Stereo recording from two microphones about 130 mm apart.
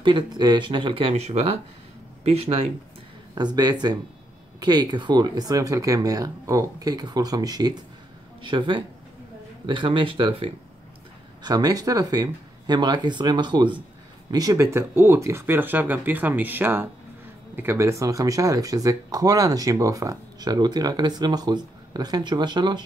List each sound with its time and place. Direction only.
0.0 s speech: 35° right (ahead or behind); by 2.7 s 50° right (ahead or behind)
3.3 s speech: 35° right (ahead or behind)
11.4 s speech: 30° right (ahead or behind)